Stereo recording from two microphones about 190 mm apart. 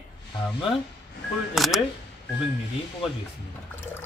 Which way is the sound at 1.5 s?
Centre (ahead or behind).